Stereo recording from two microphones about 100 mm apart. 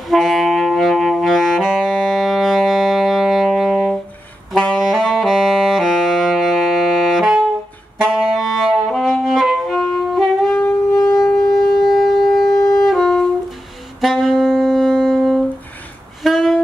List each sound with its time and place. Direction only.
0.1 s saxophone: centre (ahead or behind)
8.0 s music: 5° right (ahead or behind)
11.0 s shofar: 40° left (ahead or behind)
11.3 s shofar: centre (ahead or behind)
12.8 s music: centre (ahead or behind)
14.0 s saxophone: centre (ahead or behind)
16.2 s a sound: centre (ahead or behind)